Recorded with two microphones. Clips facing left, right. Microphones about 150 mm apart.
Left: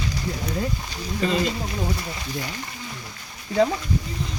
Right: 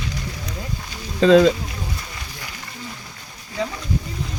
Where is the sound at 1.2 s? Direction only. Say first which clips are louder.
Right 11 dB; 90° right.